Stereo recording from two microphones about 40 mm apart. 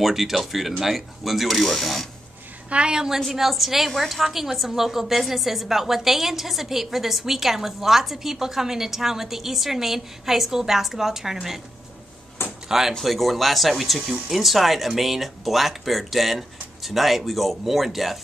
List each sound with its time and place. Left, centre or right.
0.0 s speech: centre
2.7 s a woman's voice: right
3.2 s a woman's voice: centre
12.6 s speech: centre